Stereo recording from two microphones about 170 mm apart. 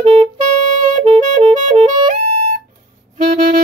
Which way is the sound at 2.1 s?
45° right (ahead or behind).